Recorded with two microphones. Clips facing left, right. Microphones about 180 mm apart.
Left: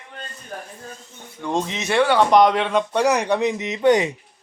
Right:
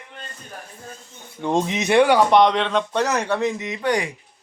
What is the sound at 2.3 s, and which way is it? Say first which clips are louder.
Speech: left 1 dB; centre (ahead or behind).